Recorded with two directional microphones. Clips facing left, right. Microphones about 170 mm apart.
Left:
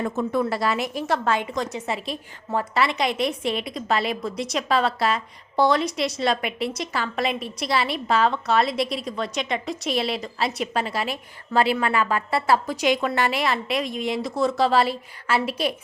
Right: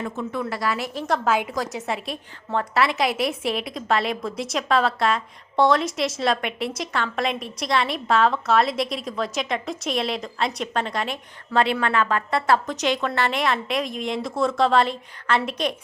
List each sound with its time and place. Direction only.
0.0 s a woman's voice: 40° left (ahead or behind)
0.6 s a woman's voice: 25° left (ahead or behind)
0.9 s a woman's voice: 5° left (ahead or behind)